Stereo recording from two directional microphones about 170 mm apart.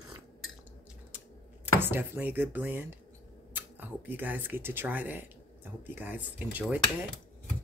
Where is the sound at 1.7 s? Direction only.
10° right (ahead or behind).